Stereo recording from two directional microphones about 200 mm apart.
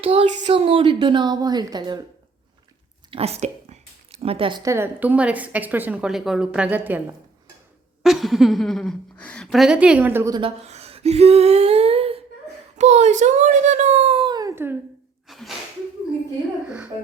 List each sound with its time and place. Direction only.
0.0 s a woman's voice: 30° right (ahead or behind)
3.1 s a woman's voice: 30° right (ahead or behind); by 10.4 s 15° right (ahead or behind)
10.4 s a child's voice: 30° right (ahead or behind); by 14.8 s 10° right (ahead or behind)
15.3 s a sound: centre (ahead or behind)